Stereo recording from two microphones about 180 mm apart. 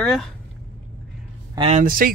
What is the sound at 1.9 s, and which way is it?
Speech, 55° right (ahead or behind).